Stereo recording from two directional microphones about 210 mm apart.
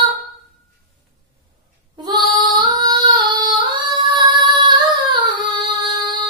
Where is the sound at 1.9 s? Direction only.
20° right (ahead or behind).